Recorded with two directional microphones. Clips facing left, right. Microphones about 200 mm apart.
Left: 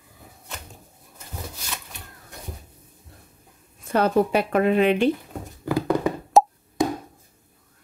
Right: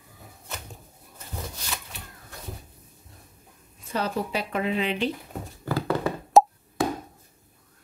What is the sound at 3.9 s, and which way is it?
Speech, 55° left (ahead or behind).